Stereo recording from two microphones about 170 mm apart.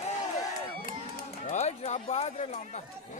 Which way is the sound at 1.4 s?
40° left (ahead or behind).